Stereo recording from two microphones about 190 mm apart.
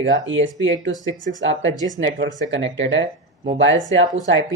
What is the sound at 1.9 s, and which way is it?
Speech, 70° right (ahead or behind).